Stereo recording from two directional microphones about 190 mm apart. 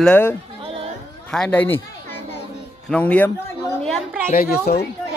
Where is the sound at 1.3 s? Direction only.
5° left (ahead or behind).